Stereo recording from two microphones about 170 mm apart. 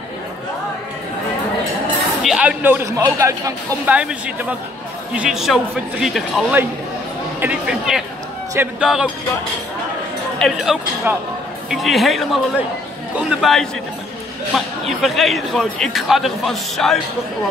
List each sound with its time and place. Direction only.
2.2 s speech: 5° right (ahead or behind)
10.4 s speech: 5° right (ahead or behind)
15.0 s speech: centre (ahead or behind)